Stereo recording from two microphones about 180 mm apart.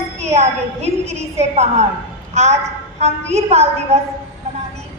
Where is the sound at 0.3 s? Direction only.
35° right (ahead or behind).